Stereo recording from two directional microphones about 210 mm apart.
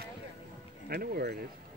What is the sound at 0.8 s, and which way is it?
Speech, 50° right (ahead or behind).